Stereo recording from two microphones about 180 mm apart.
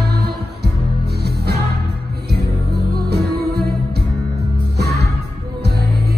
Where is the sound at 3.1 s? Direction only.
65° right (ahead or behind).